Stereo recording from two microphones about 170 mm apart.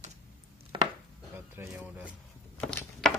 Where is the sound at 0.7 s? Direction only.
30° right (ahead or behind).